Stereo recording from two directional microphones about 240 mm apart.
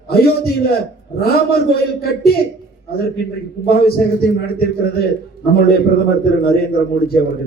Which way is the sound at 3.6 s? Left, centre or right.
Left.